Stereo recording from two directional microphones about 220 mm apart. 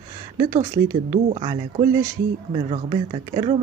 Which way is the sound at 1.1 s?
25° right (ahead or behind).